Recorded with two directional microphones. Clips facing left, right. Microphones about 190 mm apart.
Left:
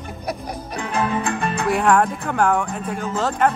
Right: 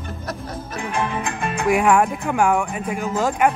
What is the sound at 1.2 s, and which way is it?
Music, 35° left (ahead or behind).